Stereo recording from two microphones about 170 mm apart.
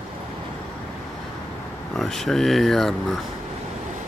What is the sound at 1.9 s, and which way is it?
Speech, centre (ahead or behind).